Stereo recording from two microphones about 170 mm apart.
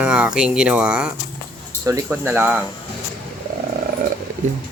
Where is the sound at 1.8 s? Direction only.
15° right (ahead or behind).